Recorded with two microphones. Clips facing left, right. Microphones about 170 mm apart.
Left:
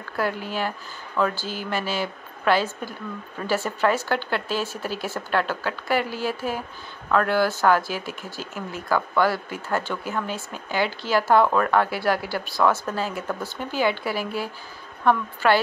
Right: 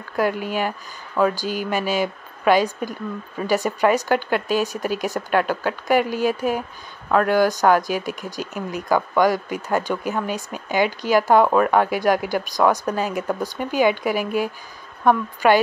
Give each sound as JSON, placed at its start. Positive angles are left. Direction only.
{"t": 0.1, "sound": "speech", "side_deg": -15}